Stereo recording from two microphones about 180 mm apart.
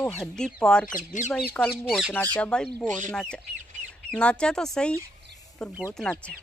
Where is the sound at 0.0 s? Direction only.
10° left (ahead or behind).